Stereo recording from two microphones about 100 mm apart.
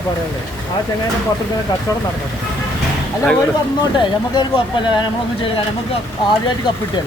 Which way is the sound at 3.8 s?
50° left (ahead or behind).